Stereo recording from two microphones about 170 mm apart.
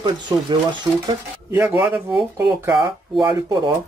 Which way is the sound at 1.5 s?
15° right (ahead or behind).